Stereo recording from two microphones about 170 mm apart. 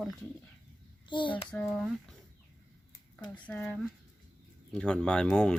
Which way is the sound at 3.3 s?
5° left (ahead or behind).